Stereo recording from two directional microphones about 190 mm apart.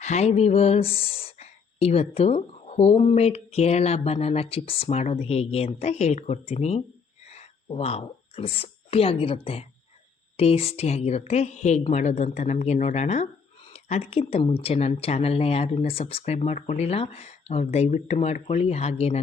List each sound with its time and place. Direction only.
0.0 s a woman's voice: 35° left (ahead or behind)